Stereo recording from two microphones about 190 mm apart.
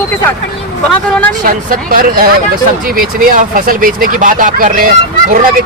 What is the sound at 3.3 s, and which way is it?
Speech, 45° right (ahead or behind).